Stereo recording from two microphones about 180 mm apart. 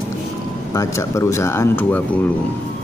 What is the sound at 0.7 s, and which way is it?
Speech, 15° left (ahead or behind).